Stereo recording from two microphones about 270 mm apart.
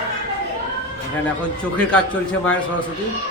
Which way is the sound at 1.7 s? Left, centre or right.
Centre.